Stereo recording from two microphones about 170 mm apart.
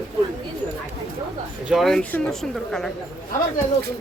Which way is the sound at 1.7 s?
Centre (ahead or behind).